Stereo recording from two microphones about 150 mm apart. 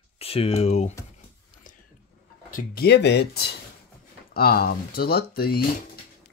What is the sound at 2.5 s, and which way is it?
Speech, 90° left.